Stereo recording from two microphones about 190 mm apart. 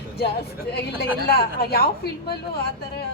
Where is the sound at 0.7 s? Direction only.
55° left (ahead or behind).